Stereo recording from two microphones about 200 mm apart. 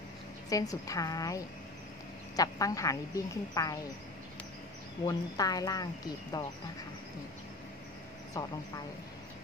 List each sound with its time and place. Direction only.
0.5 s a woman's voice: 15° left (ahead or behind)
5.0 s speech: 20° left (ahead or behind)
8.3 s a woman's voice: 20° left (ahead or behind)